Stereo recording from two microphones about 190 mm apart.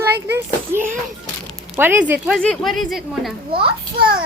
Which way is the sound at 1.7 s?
10° right (ahead or behind).